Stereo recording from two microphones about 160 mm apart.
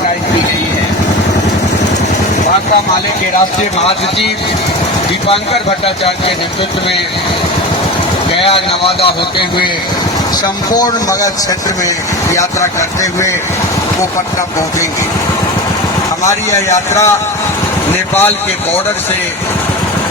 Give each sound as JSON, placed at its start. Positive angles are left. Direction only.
{"t": 8.4, "sound": "speech", "side_deg": 35}
{"t": 10.8, "sound": "speech", "side_deg": 20}
{"t": 12.3, "sound": "speech", "side_deg": 20}
{"t": 16.5, "sound": "a man's voice", "side_deg": 20}
{"t": 18.1, "sound": "a man's voice", "side_deg": 10}